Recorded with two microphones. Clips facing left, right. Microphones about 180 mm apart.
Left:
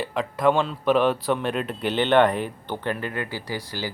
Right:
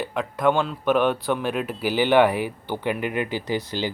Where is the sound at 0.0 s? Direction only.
Centre (ahead or behind).